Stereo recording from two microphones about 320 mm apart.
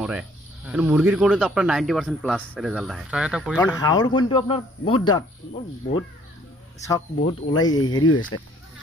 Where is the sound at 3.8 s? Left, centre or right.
Centre.